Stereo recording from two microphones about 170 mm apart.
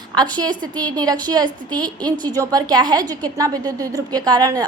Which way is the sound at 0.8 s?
25° right (ahead or behind).